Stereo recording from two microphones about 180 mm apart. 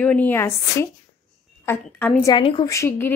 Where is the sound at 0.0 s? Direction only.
10° left (ahead or behind).